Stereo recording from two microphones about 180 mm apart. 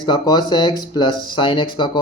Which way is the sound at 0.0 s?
25° left (ahead or behind).